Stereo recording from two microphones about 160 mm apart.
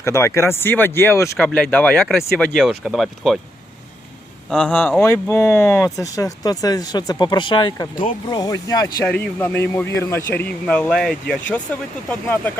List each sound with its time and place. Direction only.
0.0 s speech: 15° left (ahead or behind); by 3.3 s centre (ahead or behind)
4.4 s speech: 5° left (ahead or behind); by 9.0 s 25° left (ahead or behind)
9.0 s speech: 10° left (ahead or behind)